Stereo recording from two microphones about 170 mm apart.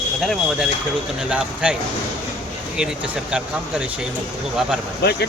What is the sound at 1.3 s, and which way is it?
Speech, 5° right (ahead or behind).